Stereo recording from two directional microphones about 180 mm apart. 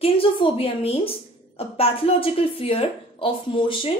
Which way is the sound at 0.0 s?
30° left (ahead or behind).